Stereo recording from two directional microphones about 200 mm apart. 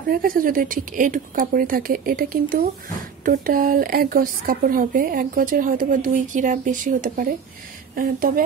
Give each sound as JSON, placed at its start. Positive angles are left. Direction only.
{"t": 0.1, "sound": "a woman's voice", "side_deg": -45}